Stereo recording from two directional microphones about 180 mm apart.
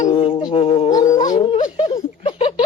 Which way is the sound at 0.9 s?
20° left (ahead or behind).